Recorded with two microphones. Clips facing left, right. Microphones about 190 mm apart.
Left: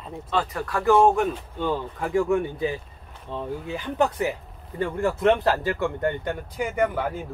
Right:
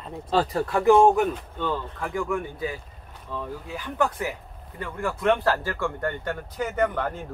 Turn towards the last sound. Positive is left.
turn(degrees=5)  # may be behind; listen again after turning